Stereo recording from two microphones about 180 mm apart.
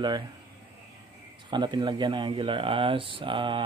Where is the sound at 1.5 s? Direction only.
25° right (ahead or behind).